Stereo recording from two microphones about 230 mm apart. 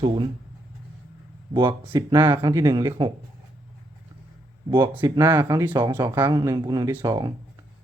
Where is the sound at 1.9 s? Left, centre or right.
Centre.